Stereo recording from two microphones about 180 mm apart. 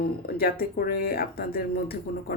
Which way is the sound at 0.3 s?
55° left (ahead or behind).